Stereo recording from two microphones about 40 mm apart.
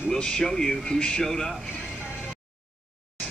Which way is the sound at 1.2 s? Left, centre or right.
Centre.